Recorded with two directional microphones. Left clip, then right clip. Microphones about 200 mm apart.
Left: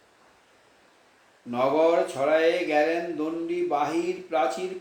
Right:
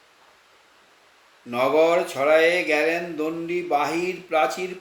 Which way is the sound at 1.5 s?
30° right (ahead or behind).